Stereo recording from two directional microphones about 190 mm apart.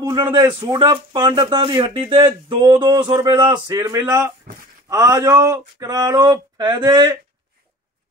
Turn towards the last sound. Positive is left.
turn(degrees=-20)  # may be behind; listen again after turning